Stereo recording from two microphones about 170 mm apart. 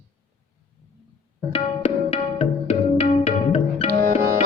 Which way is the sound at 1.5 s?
35° left (ahead or behind).